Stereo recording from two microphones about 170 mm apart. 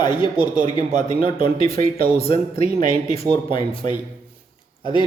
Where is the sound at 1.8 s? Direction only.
60° right (ahead or behind).